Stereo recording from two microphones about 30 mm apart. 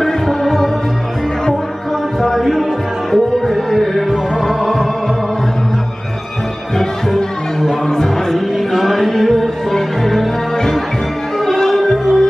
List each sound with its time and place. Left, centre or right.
0.0 s music: centre
2.2 s music: centre
7.9 s music: centre
8.5 s music: centre
11.4 s music: centre